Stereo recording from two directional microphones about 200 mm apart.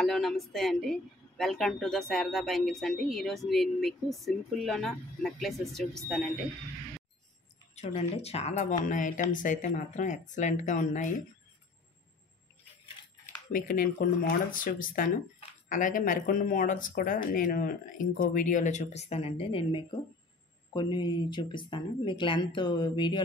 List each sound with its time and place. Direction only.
0.0 s a woman's voice: centre (ahead or behind)
7.7 s speech: 30° left (ahead or behind)
13.5 s speech: 45° left (ahead or behind); by 23.2 s 25° left (ahead or behind)